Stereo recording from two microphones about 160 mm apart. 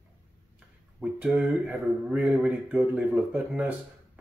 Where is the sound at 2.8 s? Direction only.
Centre (ahead or behind).